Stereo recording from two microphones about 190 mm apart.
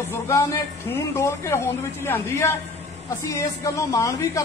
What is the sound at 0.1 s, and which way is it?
Speech, 15° left (ahead or behind).